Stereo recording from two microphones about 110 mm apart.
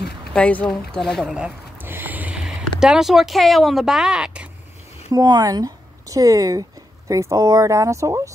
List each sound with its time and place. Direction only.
0.3 s speech: 10° left (ahead or behind)
1.3 s a sound: 10° right (ahead or behind)
2.8 s speech: 5° right (ahead or behind)
5.1 s speech: 35° right (ahead or behind)